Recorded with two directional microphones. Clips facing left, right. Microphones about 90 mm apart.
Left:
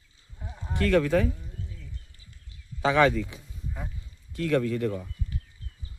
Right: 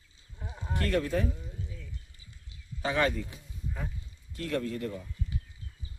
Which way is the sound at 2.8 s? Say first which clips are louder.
Left 7 dB; 90° left.